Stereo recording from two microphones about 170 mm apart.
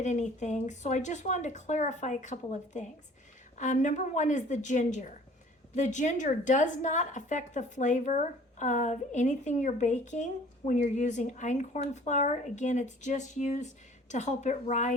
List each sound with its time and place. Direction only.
0.0 s a woman's voice: 45° left (ahead or behind)